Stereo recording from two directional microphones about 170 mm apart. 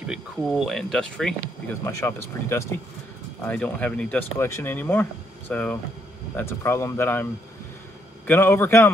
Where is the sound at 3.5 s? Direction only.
5° left (ahead or behind).